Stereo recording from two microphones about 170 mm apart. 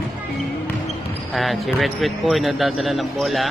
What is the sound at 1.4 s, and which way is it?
Speech, centre (ahead or behind).